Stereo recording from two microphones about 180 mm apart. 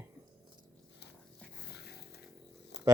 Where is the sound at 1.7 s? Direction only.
65° left (ahead or behind).